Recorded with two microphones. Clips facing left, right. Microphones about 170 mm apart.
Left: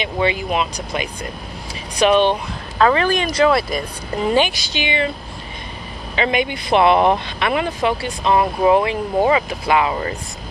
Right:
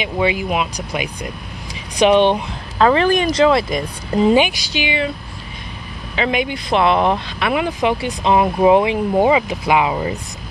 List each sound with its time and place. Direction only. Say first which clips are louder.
0.0 s speech: right 1 dB; 10° right (ahead or behind)
6.1 s speech: even; centre (ahead or behind)